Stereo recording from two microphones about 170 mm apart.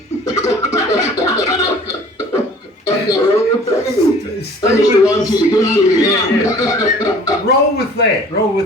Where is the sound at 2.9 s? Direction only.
20° left (ahead or behind).